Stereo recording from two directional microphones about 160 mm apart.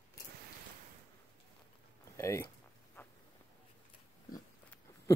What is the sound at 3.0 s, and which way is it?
Insect, 15° left (ahead or behind).